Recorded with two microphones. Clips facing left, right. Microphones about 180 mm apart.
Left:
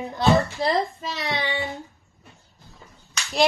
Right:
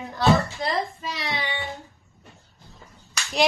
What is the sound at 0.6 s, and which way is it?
Speech, 30° left (ahead or behind).